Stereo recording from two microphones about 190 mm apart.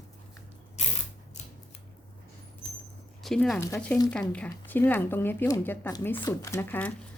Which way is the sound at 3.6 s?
10° left (ahead or behind).